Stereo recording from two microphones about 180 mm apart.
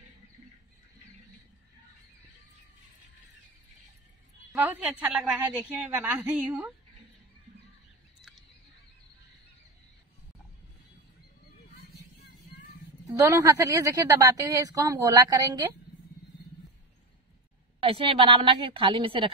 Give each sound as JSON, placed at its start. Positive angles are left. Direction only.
{"t": 4.5, "sound": "a woman's voice", "side_deg": -5}
{"t": 8.2, "sound": "a sound", "side_deg": 0}
{"t": 13.0, "sound": "a woman's voice", "side_deg": -15}
{"t": 17.8, "sound": "a woman's voice", "side_deg": -30}